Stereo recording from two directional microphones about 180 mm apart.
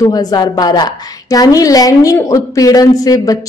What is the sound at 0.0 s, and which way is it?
A woman's voice, 20° left (ahead or behind).